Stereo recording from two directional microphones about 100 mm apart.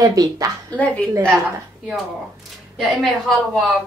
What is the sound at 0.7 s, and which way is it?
Speech, 15° left (ahead or behind).